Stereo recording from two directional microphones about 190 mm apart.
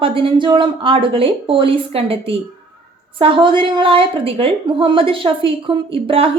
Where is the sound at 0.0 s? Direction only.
30° right (ahead or behind).